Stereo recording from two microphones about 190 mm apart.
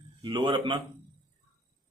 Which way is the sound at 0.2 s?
25° right (ahead or behind).